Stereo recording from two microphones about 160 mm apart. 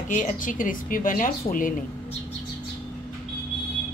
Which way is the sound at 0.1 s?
55° left (ahead or behind).